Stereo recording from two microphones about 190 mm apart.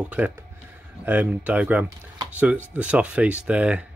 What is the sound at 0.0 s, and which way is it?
Speech, 10° right (ahead or behind).